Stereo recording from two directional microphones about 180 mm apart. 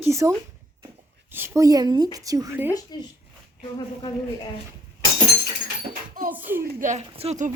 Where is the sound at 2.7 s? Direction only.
20° left (ahead or behind).